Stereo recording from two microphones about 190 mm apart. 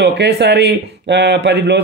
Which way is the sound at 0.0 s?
65° right (ahead or behind).